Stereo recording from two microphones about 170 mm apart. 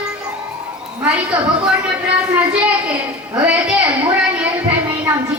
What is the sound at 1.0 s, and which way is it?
Speech, 5° right (ahead or behind).